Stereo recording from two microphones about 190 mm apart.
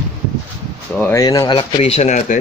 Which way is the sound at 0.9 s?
10° left (ahead or behind).